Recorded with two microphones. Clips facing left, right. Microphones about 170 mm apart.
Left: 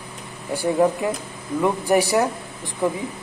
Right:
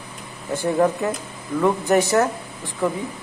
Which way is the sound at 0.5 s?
10° left (ahead or behind).